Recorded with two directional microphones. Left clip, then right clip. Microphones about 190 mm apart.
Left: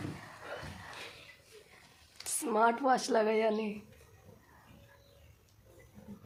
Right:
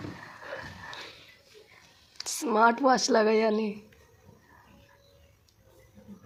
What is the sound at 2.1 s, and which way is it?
Speech, 25° right (ahead or behind).